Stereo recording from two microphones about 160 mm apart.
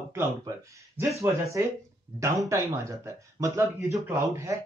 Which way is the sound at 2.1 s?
20° right (ahead or behind).